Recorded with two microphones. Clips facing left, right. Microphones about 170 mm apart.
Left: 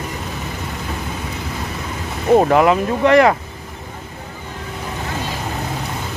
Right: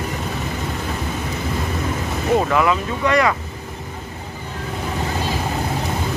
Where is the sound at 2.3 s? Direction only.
35° left (ahead or behind).